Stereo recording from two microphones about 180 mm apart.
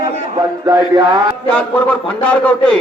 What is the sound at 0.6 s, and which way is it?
Mantra, 20° right (ahead or behind).